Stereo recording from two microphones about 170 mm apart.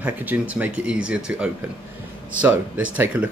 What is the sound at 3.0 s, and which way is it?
Speech, 5° right (ahead or behind).